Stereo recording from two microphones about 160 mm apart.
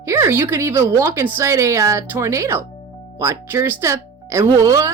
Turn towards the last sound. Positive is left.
turn(degrees=-20)  # may be behind; listen again after turning